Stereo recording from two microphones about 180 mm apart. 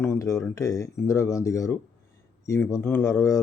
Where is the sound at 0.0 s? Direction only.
15° left (ahead or behind).